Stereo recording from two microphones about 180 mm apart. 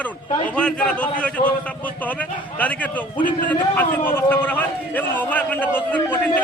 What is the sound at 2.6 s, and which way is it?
A man's voice, 10° left (ahead or behind).